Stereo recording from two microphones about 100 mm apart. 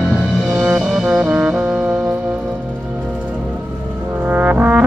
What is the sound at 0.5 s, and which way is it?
Brass instrument, 5° right (ahead or behind).